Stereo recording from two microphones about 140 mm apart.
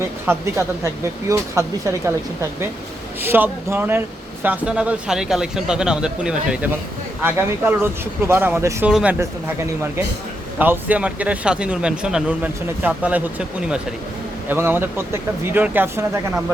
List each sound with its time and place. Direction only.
0.3 s a man's voice: 15° right (ahead or behind)
8.9 s a man's voice: 5° right (ahead or behind)
10.6 s speech: 10° right (ahead or behind)
14.5 s speech: 15° right (ahead or behind)